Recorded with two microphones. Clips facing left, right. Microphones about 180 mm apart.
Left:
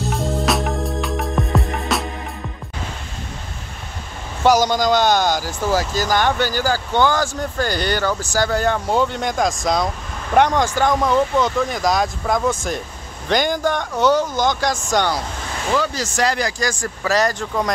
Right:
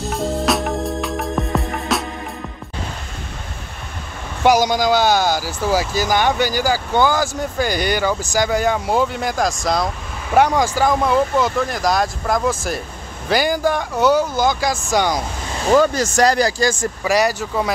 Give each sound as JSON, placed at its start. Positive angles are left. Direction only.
{"t": 0.1, "sound": "music", "side_deg": 0}
{"t": 4.4, "sound": "speech", "side_deg": -10}
{"t": 15.7, "sound": "speech", "side_deg": -50}
{"t": 17.0, "sound": "speech", "side_deg": -10}